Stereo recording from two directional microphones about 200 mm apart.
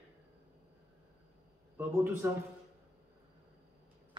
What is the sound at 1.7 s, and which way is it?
Speech, 10° right (ahead or behind).